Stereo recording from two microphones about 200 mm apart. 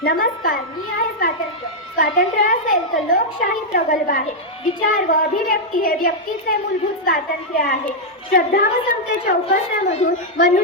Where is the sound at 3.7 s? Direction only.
50° left (ahead or behind).